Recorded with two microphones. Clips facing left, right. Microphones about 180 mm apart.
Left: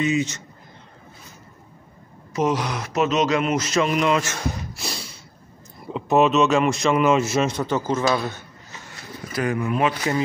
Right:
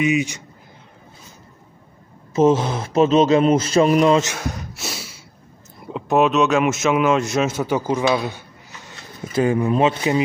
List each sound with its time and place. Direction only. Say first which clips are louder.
0.0 s speech: right 3 dB; 15° right (ahead or behind)
2.3 s speech: right 6 dB; 25° right (ahead or behind)
4.4 s a sound: even; centre (ahead or behind)
5.9 s a man's voice: right 1 dB; centre (ahead or behind)
9.3 s speech: right 6 dB; 25° right (ahead or behind)